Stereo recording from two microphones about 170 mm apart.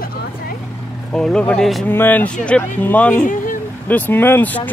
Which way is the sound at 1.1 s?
5° left (ahead or behind).